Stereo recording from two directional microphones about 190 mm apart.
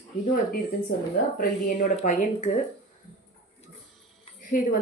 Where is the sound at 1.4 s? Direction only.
45° left (ahead or behind).